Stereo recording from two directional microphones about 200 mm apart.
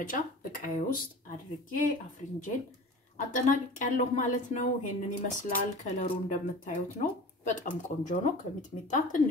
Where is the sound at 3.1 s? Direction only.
40° left (ahead or behind).